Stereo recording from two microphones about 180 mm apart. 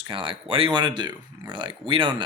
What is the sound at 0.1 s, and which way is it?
Speech, 30° right (ahead or behind).